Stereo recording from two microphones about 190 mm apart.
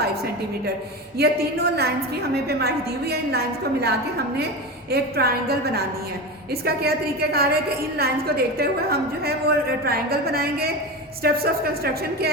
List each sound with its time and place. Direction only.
1.2 s a woman's voice: 55° right (ahead or behind)